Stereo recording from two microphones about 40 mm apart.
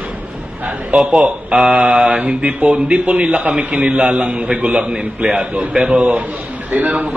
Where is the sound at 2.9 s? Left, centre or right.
Right.